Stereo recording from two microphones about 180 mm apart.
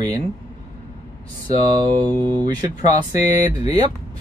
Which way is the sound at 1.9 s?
25° right (ahead or behind).